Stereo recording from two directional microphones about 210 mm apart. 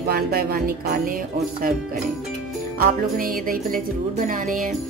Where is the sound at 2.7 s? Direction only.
45° right (ahead or behind).